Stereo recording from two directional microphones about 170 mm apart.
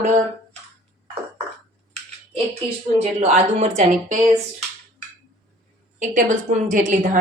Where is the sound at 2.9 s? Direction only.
40° right (ahead or behind).